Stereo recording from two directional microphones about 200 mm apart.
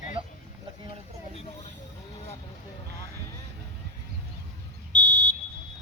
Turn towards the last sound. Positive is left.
turn(degrees=-60)  # may be behind; listen again after turning